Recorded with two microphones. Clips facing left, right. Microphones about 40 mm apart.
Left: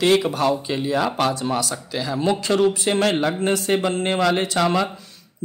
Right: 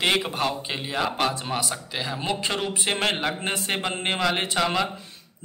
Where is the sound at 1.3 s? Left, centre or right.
Right.